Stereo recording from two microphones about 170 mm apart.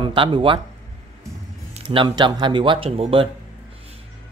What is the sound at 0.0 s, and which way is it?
Speech, 30° right (ahead or behind).